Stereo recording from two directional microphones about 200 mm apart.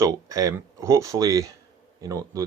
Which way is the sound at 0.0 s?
15° right (ahead or behind).